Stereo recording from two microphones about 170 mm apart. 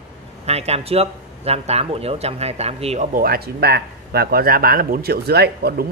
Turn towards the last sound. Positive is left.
turn(degrees=-70)  # may be behind; listen again after turning